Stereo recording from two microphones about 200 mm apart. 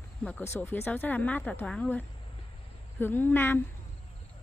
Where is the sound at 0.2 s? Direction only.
10° left (ahead or behind).